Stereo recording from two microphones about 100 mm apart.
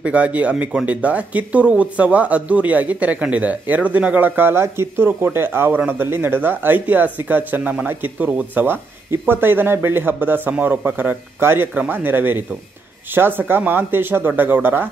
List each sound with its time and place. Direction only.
0.0 s speech: 15° right (ahead or behind)